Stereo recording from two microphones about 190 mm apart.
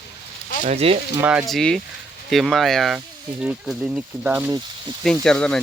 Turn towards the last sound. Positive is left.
turn(degrees=5)  # may be behind; listen again after turning